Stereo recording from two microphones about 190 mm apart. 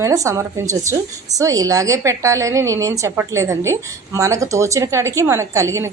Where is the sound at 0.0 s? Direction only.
15° right (ahead or behind).